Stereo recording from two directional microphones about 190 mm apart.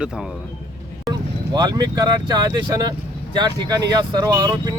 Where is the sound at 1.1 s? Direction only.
20° right (ahead or behind).